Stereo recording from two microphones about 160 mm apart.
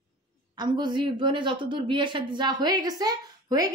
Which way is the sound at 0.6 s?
30° right (ahead or behind).